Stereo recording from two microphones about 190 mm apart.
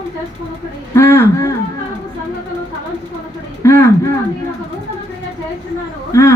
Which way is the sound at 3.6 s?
15° left (ahead or behind).